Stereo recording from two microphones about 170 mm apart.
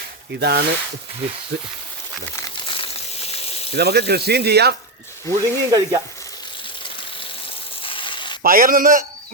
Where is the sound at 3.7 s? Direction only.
70° right (ahead or behind).